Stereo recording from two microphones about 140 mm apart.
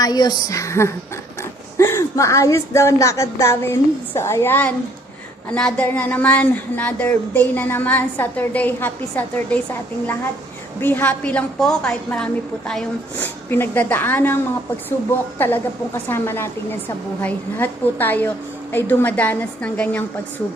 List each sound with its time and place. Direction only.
0.0 s speech: 30° left (ahead or behind); by 9.6 s 10° left (ahead or behind)
10.8 s speech: 15° left (ahead or behind)
15.4 s speech: 15° left (ahead or behind)